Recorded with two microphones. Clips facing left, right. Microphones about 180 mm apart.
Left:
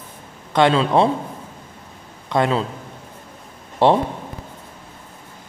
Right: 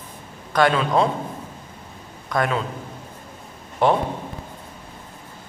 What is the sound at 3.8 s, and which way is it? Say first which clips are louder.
Speech: left 3 dB; 30° left (ahead or behind).